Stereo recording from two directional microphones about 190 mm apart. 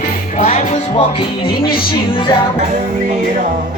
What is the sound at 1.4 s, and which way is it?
Music, 50° left (ahead or behind).